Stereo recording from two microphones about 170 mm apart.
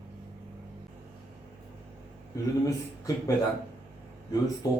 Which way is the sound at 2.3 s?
20° left (ahead or behind).